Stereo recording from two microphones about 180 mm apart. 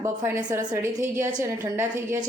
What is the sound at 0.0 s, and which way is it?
A woman's voice, 15° right (ahead or behind).